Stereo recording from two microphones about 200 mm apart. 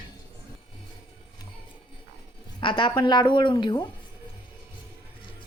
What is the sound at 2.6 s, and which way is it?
Speech, 25° left (ahead or behind).